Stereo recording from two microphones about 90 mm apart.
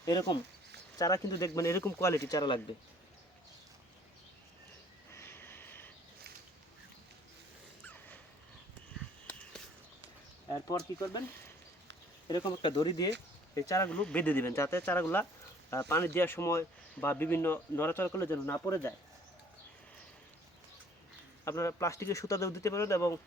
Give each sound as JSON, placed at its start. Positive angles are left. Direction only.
{"t": 0.0, "sound": "speech", "side_deg": 45}
{"t": 2.3, "sound": "speech", "side_deg": 55}
{"t": 5.1, "sound": "a sound", "side_deg": 25}
{"t": 7.9, "sound": "dog", "side_deg": 20}
{"t": 10.5, "sound": "speech", "side_deg": 40}
{"t": 12.5, "sound": "speech", "side_deg": 60}
{"t": 13.5, "sound": "speech", "side_deg": 40}
{"t": 13.9, "sound": "speech", "side_deg": 15}
{"t": 21.4, "sound": "speech", "side_deg": 35}